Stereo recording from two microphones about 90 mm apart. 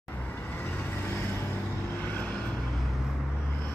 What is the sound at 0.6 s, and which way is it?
Vehicle, 25° left (ahead or behind).